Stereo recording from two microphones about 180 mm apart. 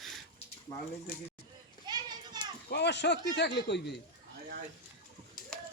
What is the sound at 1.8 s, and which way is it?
Children playing, 25° right (ahead or behind).